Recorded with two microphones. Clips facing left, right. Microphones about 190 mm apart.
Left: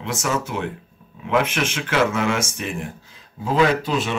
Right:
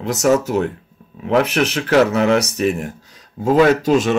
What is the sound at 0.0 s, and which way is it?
Speech, 40° right (ahead or behind).